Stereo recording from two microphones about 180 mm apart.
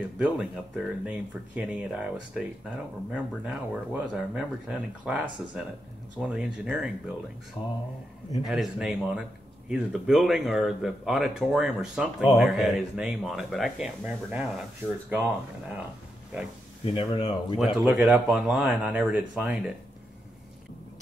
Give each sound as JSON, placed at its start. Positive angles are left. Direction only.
{"t": 0.2, "sound": "speech", "side_deg": -5}
{"t": 7.6, "sound": "speech", "side_deg": 20}
{"t": 8.5, "sound": "speech", "side_deg": 0}
{"t": 16.8, "sound": "speech", "side_deg": 30}
{"t": 17.6, "sound": "speech", "side_deg": 0}